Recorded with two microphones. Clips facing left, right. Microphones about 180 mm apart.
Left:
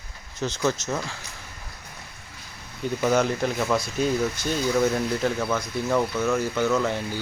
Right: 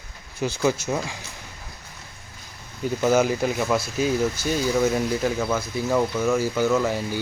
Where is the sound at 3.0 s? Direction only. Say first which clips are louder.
Right 2 dB; 5° right (ahead or behind).